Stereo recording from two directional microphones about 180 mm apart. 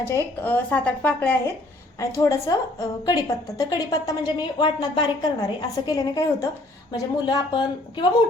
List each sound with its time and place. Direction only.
0.0 s a woman's voice: 15° left (ahead or behind)